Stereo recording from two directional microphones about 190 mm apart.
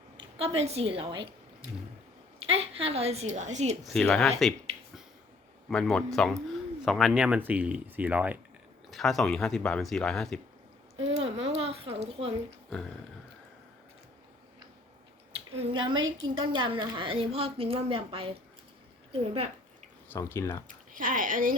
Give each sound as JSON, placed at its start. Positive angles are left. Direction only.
{"t": 0.3, "sound": "a woman's voice", "side_deg": -30}
{"t": 2.5, "sound": "a woman's voice", "side_deg": -30}
{"t": 3.8, "sound": "speech", "side_deg": 0}
{"t": 5.6, "sound": "speech", "side_deg": 5}
{"t": 10.9, "sound": "a sound", "side_deg": -30}
{"t": 11.2, "sound": "a sound", "side_deg": -80}
{"t": 11.5, "sound": "a sound", "side_deg": -30}
{"t": 15.5, "sound": "a woman's voice", "side_deg": -30}
{"t": 16.0, "sound": "a woman's voice", "side_deg": -90}
{"t": 16.4, "sound": "a woman's voice", "side_deg": -25}
{"t": 20.1, "sound": "speech", "side_deg": 15}
{"t": 20.7, "sound": "speech", "side_deg": -45}